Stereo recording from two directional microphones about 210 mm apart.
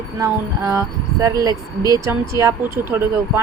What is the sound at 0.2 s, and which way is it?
Speech, 15° right (ahead or behind).